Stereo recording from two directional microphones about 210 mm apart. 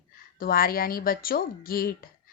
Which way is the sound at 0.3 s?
45° left (ahead or behind).